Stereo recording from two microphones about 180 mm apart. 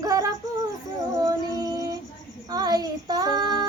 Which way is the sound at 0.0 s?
20° right (ahead or behind).